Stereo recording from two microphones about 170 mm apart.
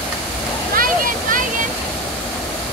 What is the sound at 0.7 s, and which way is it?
Waterfall, 55° right (ahead or behind).